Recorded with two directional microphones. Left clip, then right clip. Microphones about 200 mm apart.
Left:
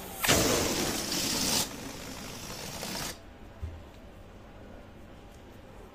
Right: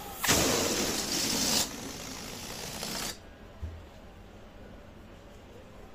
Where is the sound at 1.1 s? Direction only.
10° left (ahead or behind).